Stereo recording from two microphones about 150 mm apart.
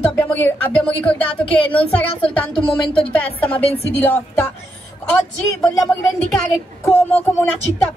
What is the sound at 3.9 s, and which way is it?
Speech, 15° left (ahead or behind).